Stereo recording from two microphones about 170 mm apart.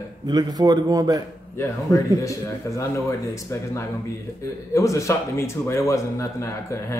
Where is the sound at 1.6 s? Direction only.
20° left (ahead or behind).